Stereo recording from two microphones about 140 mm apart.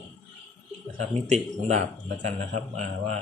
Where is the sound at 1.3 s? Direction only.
55° right (ahead or behind).